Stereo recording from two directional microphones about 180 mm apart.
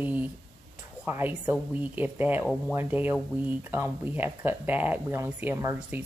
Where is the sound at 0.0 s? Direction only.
10° right (ahead or behind).